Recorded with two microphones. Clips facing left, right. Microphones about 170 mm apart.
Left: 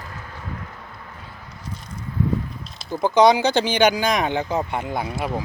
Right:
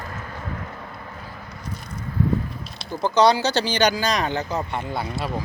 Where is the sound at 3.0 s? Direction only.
15° left (ahead or behind).